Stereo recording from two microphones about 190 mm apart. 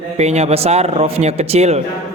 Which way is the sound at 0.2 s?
35° right (ahead or behind).